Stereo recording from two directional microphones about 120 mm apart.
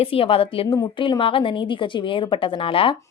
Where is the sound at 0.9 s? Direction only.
45° left (ahead or behind).